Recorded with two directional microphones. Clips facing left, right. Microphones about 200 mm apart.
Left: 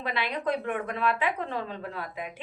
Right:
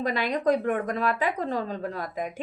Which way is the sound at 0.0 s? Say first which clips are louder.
Right 5 dB; 40° right (ahead or behind).